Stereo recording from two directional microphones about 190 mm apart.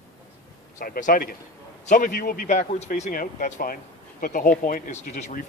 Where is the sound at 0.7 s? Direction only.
45° left (ahead or behind).